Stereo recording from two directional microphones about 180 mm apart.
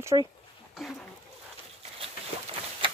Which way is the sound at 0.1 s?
30° right (ahead or behind).